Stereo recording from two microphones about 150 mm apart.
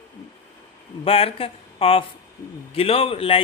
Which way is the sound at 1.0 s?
40° left (ahead or behind).